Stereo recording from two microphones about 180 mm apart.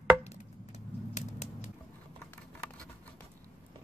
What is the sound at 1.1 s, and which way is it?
Typewriter, 40° left (ahead or behind).